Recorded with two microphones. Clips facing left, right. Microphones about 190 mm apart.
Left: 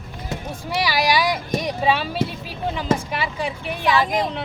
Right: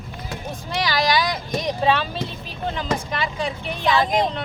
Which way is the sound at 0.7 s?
10° left (ahead or behind).